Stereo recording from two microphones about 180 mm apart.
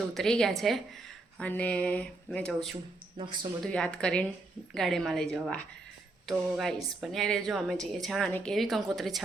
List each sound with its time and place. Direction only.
0.1 s a woman's voice: centre (ahead or behind)
3.2 s speech: 25° right (ahead or behind)
3.6 s a woman's voice: 5° left (ahead or behind)